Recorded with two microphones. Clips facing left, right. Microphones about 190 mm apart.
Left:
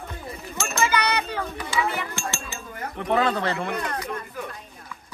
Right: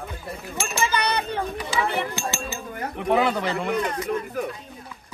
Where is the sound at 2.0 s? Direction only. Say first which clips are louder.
Right 4 dB; 35° right (ahead or behind).